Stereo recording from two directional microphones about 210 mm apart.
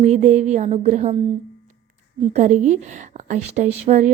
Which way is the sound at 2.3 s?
35° right (ahead or behind).